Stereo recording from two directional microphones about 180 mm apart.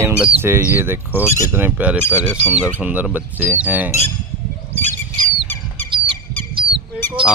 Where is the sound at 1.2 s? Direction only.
15° left (ahead or behind).